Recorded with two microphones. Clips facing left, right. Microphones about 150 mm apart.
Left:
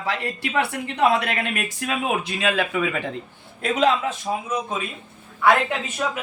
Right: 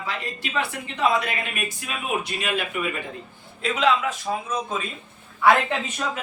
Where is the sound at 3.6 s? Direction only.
45° left (ahead or behind).